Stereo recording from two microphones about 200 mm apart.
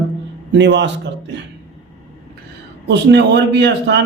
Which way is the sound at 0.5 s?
65° right (ahead or behind).